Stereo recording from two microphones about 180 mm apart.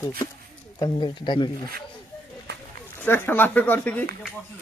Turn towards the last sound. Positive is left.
turn(degrees=10)  # may be behind; listen again after turning